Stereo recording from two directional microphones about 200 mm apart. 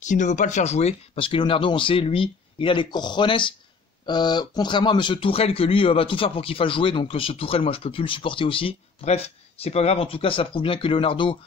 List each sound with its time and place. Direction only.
0.0 s speech: 40° left (ahead or behind)